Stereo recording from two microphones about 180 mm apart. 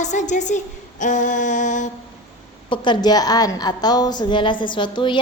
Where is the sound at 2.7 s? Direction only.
25° left (ahead or behind).